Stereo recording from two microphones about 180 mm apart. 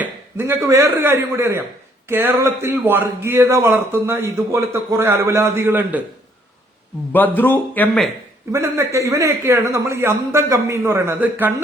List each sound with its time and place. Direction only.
0.0 s a man's voice: 10° right (ahead or behind)
7.1 s speech: 10° left (ahead or behind)
8.5 s a man's voice: 15° right (ahead or behind)